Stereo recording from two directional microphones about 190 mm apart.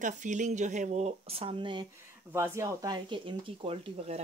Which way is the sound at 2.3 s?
15° right (ahead or behind).